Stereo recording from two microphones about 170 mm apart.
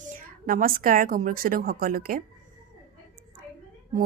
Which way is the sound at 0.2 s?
55° right (ahead or behind).